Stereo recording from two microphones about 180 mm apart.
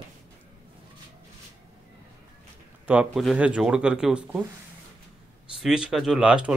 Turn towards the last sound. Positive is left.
turn(degrees=-5)  # may be behind; listen again after turning